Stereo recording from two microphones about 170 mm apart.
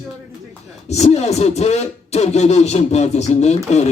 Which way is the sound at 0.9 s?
40° left (ahead or behind).